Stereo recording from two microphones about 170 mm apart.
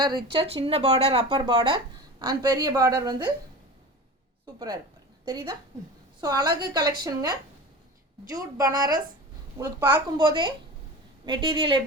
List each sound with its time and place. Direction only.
0.0 s speech: 25° right (ahead or behind)
5.2 s a woman's voice: 25° right (ahead or behind)